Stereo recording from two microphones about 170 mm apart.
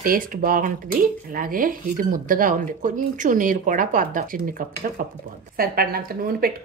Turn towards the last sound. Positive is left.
turn(degrees=-60)  # may be behind; listen again after turning